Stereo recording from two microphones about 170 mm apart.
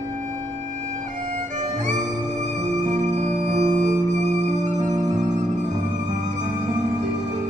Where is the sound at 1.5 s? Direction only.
45° right (ahead or behind).